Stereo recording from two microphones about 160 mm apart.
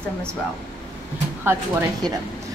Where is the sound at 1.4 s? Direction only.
15° right (ahead or behind).